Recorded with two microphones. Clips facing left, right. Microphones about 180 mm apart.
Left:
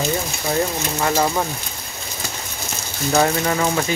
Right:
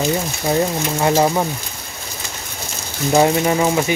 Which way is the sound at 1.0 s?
20° right (ahead or behind).